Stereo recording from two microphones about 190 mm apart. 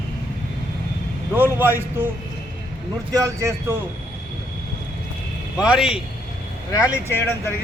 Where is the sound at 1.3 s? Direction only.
10° right (ahead or behind).